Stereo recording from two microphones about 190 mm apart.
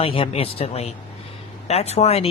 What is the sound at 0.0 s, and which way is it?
Speech, 30° left (ahead or behind).